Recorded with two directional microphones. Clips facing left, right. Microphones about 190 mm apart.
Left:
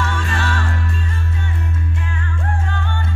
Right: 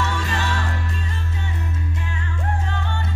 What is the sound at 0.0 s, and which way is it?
Music, 20° right (ahead or behind).